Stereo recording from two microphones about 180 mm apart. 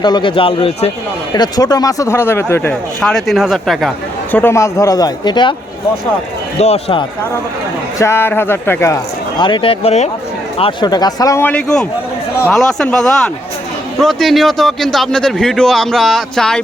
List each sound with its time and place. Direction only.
0.0 s a man's voice: 25° left (ahead or behind)
3.0 s a man's voice: 5° left (ahead or behind); by 5.5 s 25° left (ahead or behind)
6.6 s speech: 35° left (ahead or behind)
7.9 s a man's voice: 15° left (ahead or behind)
9.4 s a man's voice: 25° left (ahead or behind); by 16.6 s 5° left (ahead or behind)